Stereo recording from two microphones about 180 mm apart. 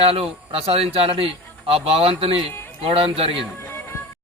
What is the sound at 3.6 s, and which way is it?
Music, 15° left (ahead or behind).